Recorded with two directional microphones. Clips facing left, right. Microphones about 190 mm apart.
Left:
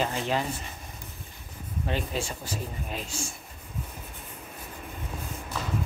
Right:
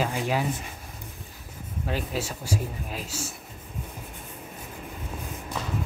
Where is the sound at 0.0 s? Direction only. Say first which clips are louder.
Right 1 dB; 10° right (ahead or behind).